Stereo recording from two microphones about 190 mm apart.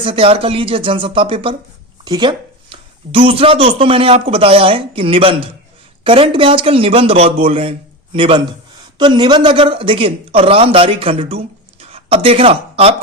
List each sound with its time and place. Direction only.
0.0 s a man's voice: 30° right (ahead or behind)